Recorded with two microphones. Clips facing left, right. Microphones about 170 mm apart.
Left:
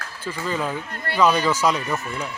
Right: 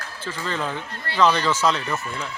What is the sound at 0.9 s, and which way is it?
Speech, 55° left (ahead or behind).